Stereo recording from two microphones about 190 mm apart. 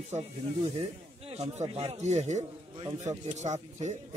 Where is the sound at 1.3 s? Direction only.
35° right (ahead or behind).